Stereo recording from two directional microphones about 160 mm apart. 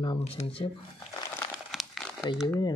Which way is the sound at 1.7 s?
Centre (ahead or behind).